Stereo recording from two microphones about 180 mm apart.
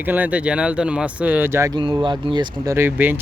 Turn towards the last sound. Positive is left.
turn(degrees=-10)  # may be behind; listen again after turning